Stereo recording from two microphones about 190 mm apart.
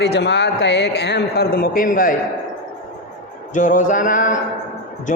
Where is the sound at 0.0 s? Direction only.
65° left (ahead or behind); by 2.1 s 45° left (ahead or behind).